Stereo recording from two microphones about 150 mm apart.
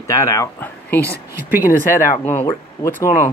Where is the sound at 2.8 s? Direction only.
30° left (ahead or behind).